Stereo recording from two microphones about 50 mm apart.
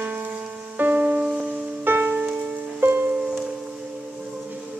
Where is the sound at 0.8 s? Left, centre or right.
Right.